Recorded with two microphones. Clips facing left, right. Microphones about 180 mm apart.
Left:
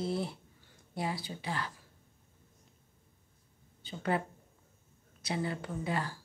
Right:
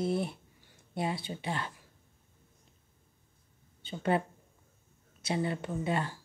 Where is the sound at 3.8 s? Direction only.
25° right (ahead or behind).